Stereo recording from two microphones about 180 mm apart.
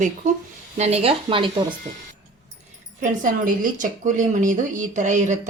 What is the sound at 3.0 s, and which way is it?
A woman's voice, 45° right (ahead or behind).